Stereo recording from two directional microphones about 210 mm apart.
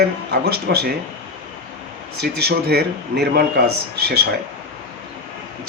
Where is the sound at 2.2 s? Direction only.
50° right (ahead or behind).